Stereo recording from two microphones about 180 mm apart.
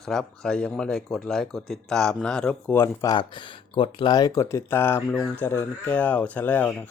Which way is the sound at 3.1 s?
25° left (ahead or behind).